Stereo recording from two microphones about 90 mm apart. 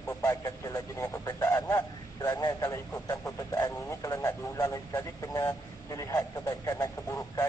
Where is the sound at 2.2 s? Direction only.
45° left (ahead or behind).